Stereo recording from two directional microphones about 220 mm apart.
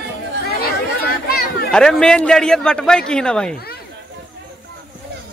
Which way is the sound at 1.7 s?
5° left (ahead or behind).